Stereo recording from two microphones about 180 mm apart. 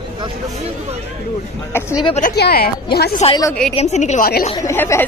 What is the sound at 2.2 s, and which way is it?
Speech, 55° left (ahead or behind).